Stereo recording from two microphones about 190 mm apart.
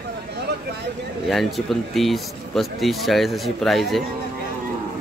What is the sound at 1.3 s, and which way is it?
Speech, centre (ahead or behind).